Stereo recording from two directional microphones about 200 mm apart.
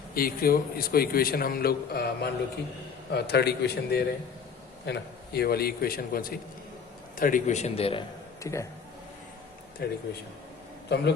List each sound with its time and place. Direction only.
0.1 s a man's voice: 45° left (ahead or behind); by 8.0 s 30° left (ahead or behind)
8.4 s speech: 15° left (ahead or behind)
9.8 s a man's voice: 50° left (ahead or behind)